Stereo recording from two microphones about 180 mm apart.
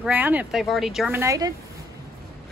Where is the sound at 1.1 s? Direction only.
15° right (ahead or behind).